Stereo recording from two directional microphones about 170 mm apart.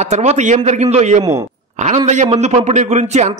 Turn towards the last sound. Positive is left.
turn(degrees=-40)  # may be behind; listen again after turning